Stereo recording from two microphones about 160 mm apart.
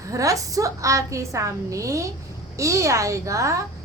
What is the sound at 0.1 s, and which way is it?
A woman's voice, 20° right (ahead or behind).